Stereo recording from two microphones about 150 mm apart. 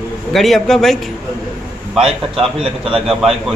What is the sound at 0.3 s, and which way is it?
A man's voice, centre (ahead or behind).